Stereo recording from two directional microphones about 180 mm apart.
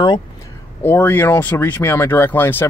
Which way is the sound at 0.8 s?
10° left (ahead or behind).